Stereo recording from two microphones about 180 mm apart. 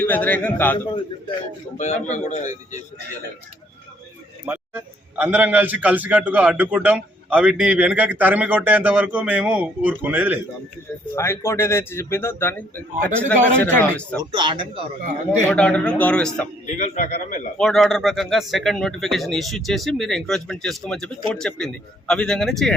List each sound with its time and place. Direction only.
0.0 s a man's voice: 10° left (ahead or behind)
1.8 s speech: 40° left (ahead or behind)
4.4 s a man's voice: 10° right (ahead or behind)
11.1 s a man's voice: 15° left (ahead or behind)
14.3 s speech: 25° right (ahead or behind)
15.4 s a man's voice: 5° left (ahead or behind)
16.6 s a man's voice: 45° left (ahead or behind)
17.6 s speech: centre (ahead or behind)